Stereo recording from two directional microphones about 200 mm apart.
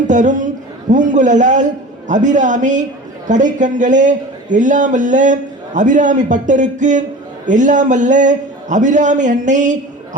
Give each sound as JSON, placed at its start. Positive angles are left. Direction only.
{"t": 0.1, "sound": "a man's voice", "side_deg": -40}